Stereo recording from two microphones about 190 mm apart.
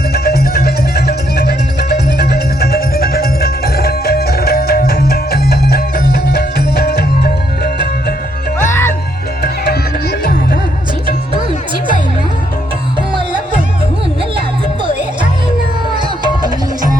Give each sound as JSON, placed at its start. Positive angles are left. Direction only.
{"t": 0.1, "sound": "music", "side_deg": 55}
{"t": 8.5, "sound": "music", "side_deg": 15}
{"t": 9.4, "sound": "music", "side_deg": 55}
{"t": 16.0, "sound": "music", "side_deg": -25}